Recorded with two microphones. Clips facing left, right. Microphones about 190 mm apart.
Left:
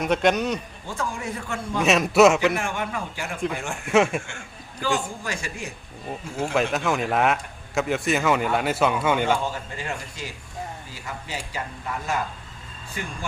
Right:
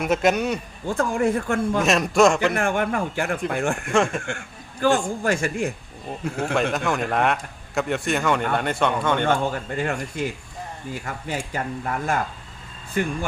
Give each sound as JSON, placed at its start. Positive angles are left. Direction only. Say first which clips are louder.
{"t": 0.0, "sound": "speech", "louder": "right 1 dB", "side_deg": -5}
{"t": 0.9, "sound": "speech", "louder": "right 9 dB", "side_deg": -55}
{"t": 1.8, "sound": "speech", "louder": "left 3 dB", "side_deg": 0}
{"t": 2.5, "sound": "a man's voice", "louder": "right 5 dB", "side_deg": -55}
{"t": 3.8, "sound": "speech", "louder": "left 4 dB", "side_deg": 5}
{"t": 4.8, "sound": "a man's voice", "louder": "right 6 dB", "side_deg": -55}
{"t": 6.4, "sound": "speech", "louder": "even", "side_deg": 0}
{"t": 9.5, "sound": "a man's voice", "louder": "right 6 dB", "side_deg": -55}